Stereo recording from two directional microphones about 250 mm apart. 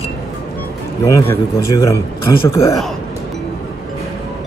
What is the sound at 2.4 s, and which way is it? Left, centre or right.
Speech, centre.